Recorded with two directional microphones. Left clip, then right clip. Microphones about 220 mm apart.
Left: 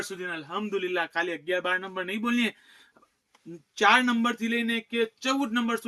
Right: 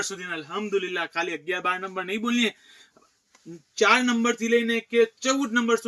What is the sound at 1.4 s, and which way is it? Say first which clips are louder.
Speech: right 1 dB; 20° left (ahead or behind).